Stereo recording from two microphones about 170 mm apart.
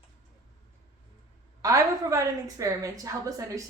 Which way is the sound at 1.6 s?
20° right (ahead or behind).